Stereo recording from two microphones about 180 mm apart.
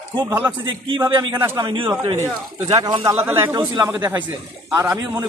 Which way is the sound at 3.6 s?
20° right (ahead or behind).